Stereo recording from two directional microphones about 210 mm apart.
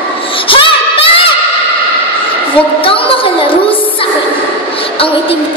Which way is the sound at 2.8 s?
25° left (ahead or behind).